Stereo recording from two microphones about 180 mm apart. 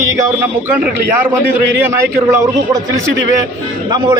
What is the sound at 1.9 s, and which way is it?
Speech, 15° right (ahead or behind).